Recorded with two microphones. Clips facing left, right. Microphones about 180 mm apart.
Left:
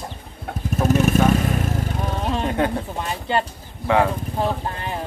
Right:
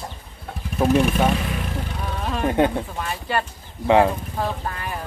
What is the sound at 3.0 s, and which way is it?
Speech, 25° left (ahead or behind).